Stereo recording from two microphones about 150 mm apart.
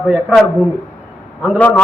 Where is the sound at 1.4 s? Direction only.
10° left (ahead or behind).